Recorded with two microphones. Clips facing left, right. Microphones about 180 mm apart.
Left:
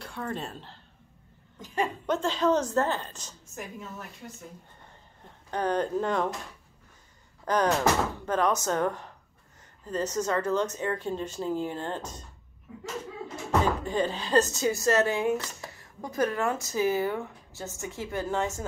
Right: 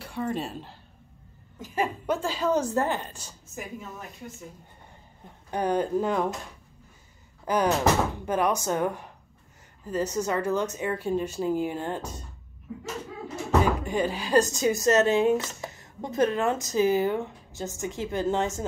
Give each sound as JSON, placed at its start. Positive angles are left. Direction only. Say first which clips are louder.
{"t": 0.0, "sound": "a woman's voice", "louder": "right 4 dB", "side_deg": -10}
{"t": 5.5, "sound": "speech", "louder": "right 2 dB", "side_deg": -10}
{"t": 7.4, "sound": "speech", "louder": "right 1 dB", "side_deg": -10}
{"t": 13.8, "sound": "speech", "louder": "right 1 dB", "side_deg": -10}